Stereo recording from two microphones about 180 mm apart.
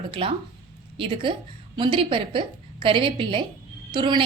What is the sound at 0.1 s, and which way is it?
A woman's voice, 30° right (ahead or behind).